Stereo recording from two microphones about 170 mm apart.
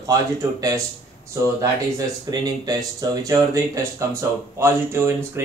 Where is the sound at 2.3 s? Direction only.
20° right (ahead or behind).